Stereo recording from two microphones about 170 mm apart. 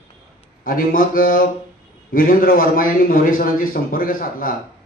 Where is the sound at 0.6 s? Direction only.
55° left (ahead or behind).